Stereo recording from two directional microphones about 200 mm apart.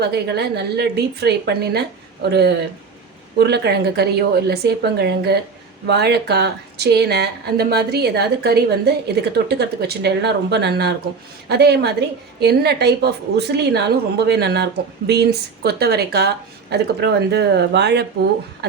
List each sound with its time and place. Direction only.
0.0 s a woman's voice: 55° right (ahead or behind)